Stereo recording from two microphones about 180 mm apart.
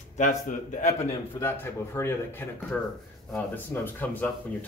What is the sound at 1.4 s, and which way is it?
Speech, 15° left (ahead or behind).